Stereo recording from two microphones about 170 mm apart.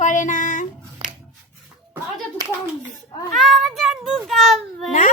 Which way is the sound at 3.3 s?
Centre (ahead or behind).